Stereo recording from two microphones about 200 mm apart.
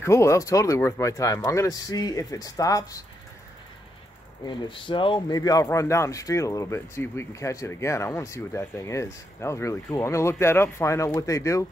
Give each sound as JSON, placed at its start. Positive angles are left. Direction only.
{"t": 0.0, "sound": "speech", "side_deg": 15}
{"t": 4.5, "sound": "speech", "side_deg": 25}